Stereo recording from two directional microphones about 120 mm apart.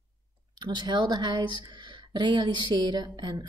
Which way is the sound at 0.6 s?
35° right (ahead or behind).